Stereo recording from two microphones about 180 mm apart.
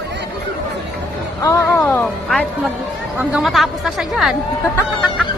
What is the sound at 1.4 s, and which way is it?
Speech, 15° left (ahead or behind).